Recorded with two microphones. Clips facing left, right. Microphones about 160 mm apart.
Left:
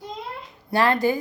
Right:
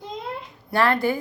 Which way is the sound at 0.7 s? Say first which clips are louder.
Left 1 dB; 20° left (ahead or behind).